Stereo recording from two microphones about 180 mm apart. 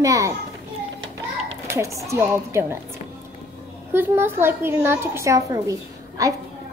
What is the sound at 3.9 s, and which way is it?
A woman's voice, 10° right (ahead or behind).